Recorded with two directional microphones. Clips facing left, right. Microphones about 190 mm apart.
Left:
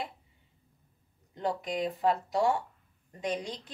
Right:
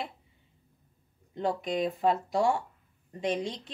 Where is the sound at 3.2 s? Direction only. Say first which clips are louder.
Right 3 dB; 25° right (ahead or behind).